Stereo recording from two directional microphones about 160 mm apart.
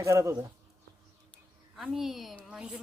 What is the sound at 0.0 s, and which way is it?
Speech, 20° right (ahead or behind).